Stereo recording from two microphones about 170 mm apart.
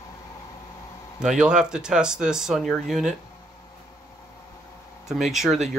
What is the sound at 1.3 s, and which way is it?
Speech, 5° right (ahead or behind).